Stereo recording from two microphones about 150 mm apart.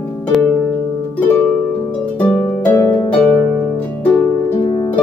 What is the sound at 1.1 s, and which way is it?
Harp, 10° left (ahead or behind).